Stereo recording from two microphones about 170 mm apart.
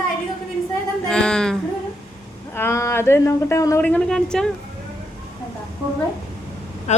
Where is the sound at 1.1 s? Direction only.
5° left (ahead or behind).